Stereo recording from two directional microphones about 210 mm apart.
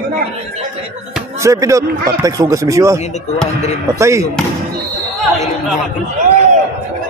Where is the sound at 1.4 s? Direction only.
15° right (ahead or behind).